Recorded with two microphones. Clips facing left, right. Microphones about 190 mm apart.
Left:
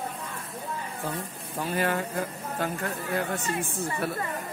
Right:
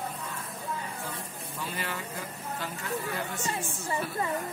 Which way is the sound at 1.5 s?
45° left (ahead or behind).